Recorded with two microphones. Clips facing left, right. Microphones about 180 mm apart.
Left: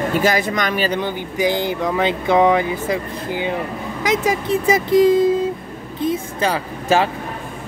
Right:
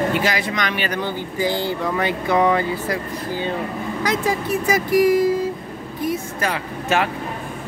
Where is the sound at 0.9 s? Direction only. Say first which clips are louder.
Left 2 dB; 15° left (ahead or behind).